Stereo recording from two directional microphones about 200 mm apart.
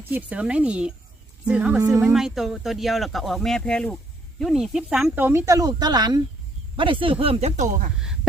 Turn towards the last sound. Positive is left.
turn(degrees=-40)  # may be behind; listen again after turning